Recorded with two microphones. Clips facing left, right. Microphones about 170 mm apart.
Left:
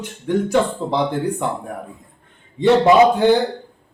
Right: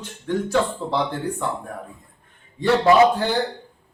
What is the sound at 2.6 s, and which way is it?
Speech, 20° left (ahead or behind).